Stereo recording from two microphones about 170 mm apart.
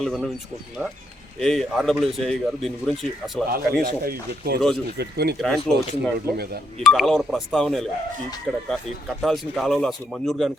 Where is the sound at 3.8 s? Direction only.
60° right (ahead or behind).